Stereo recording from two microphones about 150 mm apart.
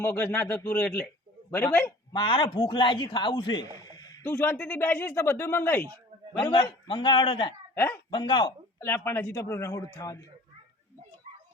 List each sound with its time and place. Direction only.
0.0 s a man's voice: 15° left (ahead or behind)
2.1 s a man's voice: 30° left (ahead or behind)
4.2 s speech: 15° left (ahead or behind)
6.3 s a man's voice: 30° left (ahead or behind)
8.8 s speech: 15° left (ahead or behind)